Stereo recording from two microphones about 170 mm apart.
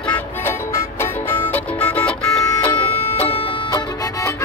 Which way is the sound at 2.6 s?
30° left (ahead or behind).